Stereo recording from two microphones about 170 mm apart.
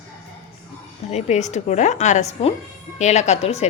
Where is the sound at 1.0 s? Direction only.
40° left (ahead or behind).